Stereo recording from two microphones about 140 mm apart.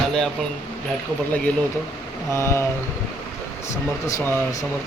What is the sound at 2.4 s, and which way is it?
Speech, 20° left (ahead or behind).